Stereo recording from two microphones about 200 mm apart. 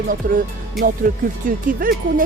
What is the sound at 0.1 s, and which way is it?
Speech, 45° right (ahead or behind).